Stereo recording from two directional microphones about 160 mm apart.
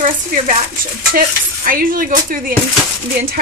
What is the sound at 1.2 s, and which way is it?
Cutlery, 60° right (ahead or behind).